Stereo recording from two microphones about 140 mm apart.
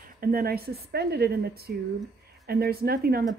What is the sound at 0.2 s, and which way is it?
Speech, 90° right.